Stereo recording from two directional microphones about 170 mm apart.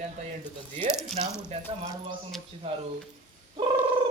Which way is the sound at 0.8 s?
40° right (ahead or behind).